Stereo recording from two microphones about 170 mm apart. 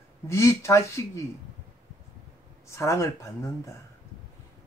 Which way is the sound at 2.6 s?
15° left (ahead or behind).